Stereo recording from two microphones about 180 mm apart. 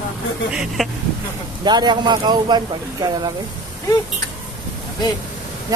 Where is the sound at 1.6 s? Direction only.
25° right (ahead or behind).